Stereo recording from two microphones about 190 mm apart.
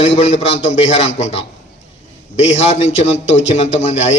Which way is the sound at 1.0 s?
35° left (ahead or behind).